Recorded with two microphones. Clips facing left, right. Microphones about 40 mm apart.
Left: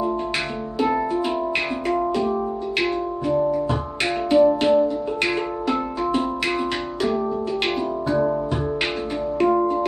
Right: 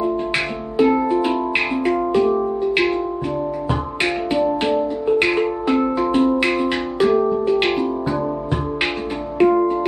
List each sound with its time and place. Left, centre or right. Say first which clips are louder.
0.7 s music: right 6 dB; centre
4.0 s music: left 3 dB; centre
9.4 s music: right 4 dB; centre